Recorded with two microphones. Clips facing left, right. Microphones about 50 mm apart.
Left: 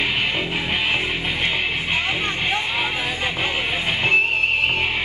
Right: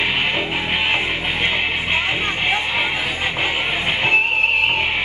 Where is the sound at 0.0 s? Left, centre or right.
Centre.